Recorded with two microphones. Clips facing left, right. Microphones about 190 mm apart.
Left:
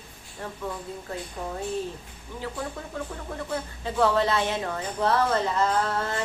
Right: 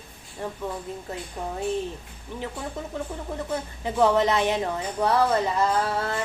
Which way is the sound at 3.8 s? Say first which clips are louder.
Right 3 dB; 20° right (ahead or behind).